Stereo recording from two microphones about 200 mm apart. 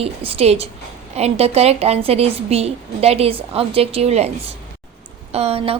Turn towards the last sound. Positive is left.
turn(degrees=-30)  # may be behind; listen again after turning